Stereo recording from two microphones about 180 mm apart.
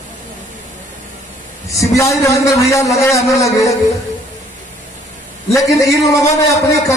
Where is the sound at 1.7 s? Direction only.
15° left (ahead or behind).